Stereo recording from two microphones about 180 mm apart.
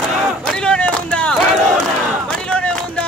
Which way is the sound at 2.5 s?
5° left (ahead or behind).